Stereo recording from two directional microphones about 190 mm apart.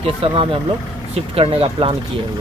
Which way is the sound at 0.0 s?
30° right (ahead or behind).